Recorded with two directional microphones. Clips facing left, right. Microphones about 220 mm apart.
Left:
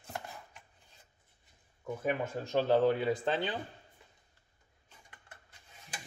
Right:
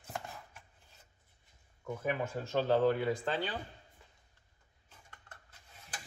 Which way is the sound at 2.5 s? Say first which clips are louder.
Left 2 dB; 15° left (ahead or behind).